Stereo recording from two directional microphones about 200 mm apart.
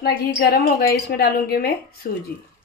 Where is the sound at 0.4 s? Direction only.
50° left (ahead or behind).